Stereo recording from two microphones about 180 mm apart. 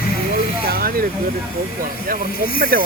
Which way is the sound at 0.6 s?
55° right (ahead or behind).